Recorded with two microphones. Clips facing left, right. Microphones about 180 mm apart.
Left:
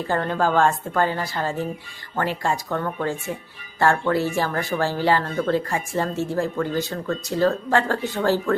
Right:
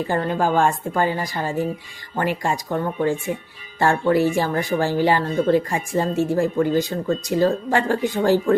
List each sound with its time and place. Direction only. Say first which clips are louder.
0.1 s speech: even; 15° right (ahead or behind)